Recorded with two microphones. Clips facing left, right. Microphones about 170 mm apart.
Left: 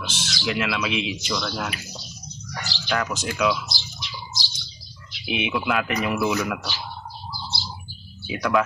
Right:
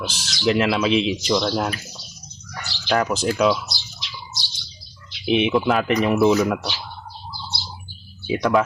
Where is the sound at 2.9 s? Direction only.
35° right (ahead or behind).